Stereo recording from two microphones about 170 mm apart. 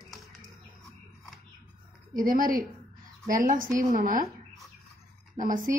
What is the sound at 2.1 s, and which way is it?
A woman's voice, 55° right (ahead or behind).